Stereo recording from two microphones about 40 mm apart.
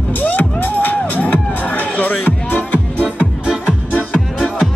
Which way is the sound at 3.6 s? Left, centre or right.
Left.